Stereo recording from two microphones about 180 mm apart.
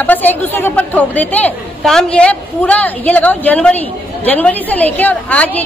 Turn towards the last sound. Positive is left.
turn(degrees=10)  # may be behind; listen again after turning